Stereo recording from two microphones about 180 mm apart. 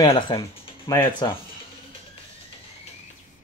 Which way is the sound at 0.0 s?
25° left (ahead or behind).